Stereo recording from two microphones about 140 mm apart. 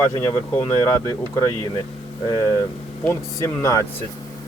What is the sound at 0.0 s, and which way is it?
Speech, 15° left (ahead or behind).